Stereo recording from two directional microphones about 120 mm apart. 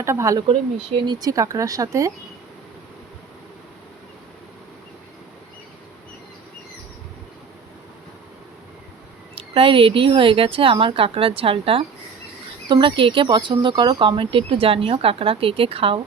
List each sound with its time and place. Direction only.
0.0 s speech: 25° right (ahead or behind)
9.3 s speech: 50° right (ahead or behind)